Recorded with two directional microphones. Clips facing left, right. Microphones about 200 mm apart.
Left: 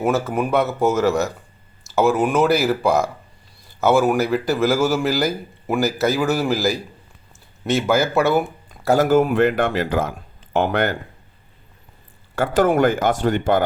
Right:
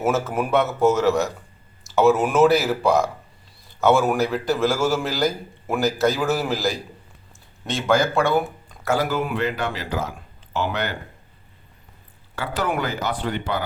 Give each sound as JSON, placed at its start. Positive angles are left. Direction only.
{"t": 0.0, "sound": "a man's voice", "side_deg": 0}
{"t": 9.0, "sound": "speech", "side_deg": 50}
{"t": 12.4, "sound": "speech", "side_deg": 45}